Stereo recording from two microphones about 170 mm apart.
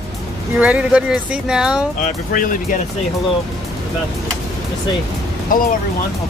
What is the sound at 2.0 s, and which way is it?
Speech, 55° left (ahead or behind).